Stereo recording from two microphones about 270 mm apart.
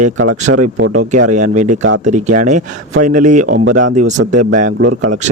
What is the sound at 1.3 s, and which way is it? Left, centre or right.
Speech, right.